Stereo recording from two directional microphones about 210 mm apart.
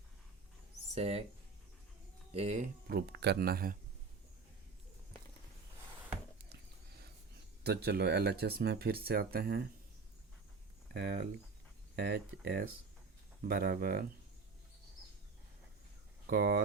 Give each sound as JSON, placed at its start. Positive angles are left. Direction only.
{"t": 0.9, "sound": "speech", "side_deg": -30}
{"t": 2.3, "sound": "speech", "side_deg": -30}
{"t": 2.8, "sound": "speech", "side_deg": -50}
{"t": 6.5, "sound": "a sound", "side_deg": -50}
{"t": 7.6, "sound": "speech", "side_deg": -50}
{"t": 10.9, "sound": "speech", "side_deg": -50}
{"t": 16.2, "sound": "speech", "side_deg": -45}